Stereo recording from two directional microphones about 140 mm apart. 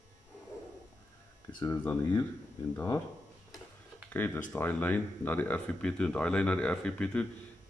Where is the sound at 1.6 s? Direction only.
20° left (ahead or behind).